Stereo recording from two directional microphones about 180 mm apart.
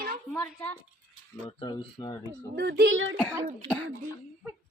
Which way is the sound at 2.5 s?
65° right (ahead or behind).